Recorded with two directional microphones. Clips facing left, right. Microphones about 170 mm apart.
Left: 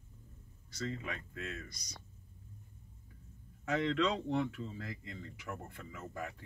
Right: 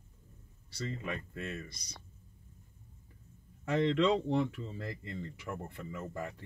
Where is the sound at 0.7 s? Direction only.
30° right (ahead or behind).